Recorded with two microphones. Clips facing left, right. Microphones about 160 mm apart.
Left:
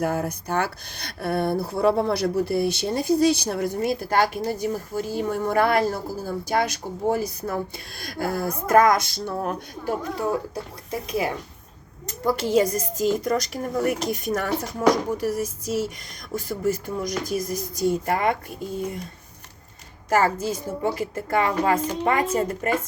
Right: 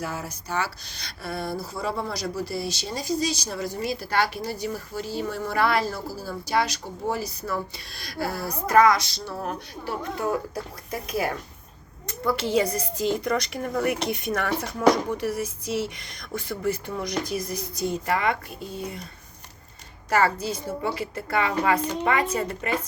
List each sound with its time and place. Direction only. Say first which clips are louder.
0.0 s speech: left 8 dB; 55° left (ahead or behind)
10.9 s speech: left 2 dB; 25° left (ahead or behind)
12.0 s a woman's voice: left 2 dB; 40° left (ahead or behind)
20.1 s speech: left 2 dB; 45° left (ahead or behind)